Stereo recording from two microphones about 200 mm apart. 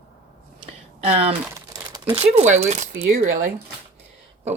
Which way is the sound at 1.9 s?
25° right (ahead or behind).